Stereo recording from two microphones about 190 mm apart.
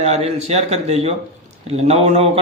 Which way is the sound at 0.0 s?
35° right (ahead or behind).